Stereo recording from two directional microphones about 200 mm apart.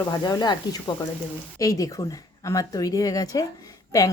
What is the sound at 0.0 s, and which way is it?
Speech, 20° left (ahead or behind).